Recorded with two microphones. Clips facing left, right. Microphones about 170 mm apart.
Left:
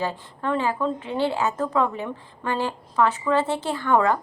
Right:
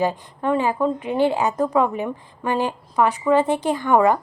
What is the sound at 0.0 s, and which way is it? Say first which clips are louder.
A woman's voice: right 5 dB; 15° right (ahead or behind).